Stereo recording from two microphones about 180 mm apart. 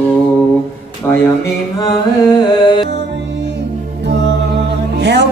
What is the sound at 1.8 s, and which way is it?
Music, 20° left (ahead or behind).